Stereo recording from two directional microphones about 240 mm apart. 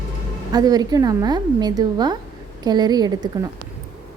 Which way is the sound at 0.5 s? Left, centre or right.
Centre.